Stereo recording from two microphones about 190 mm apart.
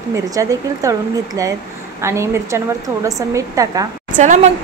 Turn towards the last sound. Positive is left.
turn(degrees=-40)  # may be behind; listen again after turning